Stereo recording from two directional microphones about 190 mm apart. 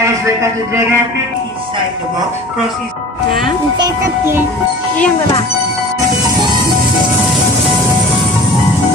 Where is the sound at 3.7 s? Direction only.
15° right (ahead or behind).